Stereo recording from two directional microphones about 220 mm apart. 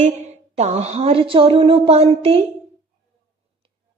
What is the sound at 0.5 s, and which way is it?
A man's voice, 30° right (ahead or behind).